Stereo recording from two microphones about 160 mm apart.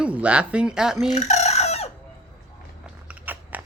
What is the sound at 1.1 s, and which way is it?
Chicken, 45° left (ahead or behind).